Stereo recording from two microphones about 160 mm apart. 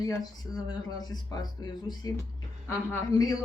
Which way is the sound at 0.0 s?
25° left (ahead or behind).